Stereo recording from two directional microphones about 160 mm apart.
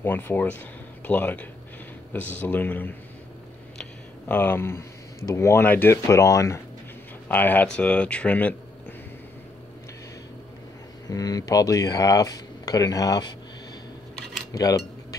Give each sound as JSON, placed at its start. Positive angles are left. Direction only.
{"t": 0.0, "sound": "speech", "side_deg": 10}
{"t": 4.3, "sound": "speech", "side_deg": 10}
{"t": 11.1, "sound": "speech", "side_deg": 25}
{"t": 14.5, "sound": "cutlery", "side_deg": 20}